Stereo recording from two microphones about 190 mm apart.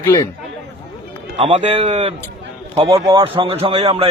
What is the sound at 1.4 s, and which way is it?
A man's voice, 35° right (ahead or behind).